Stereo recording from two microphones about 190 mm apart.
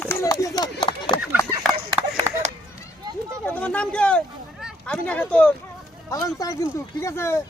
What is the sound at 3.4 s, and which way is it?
Speech, 5° left (ahead or behind).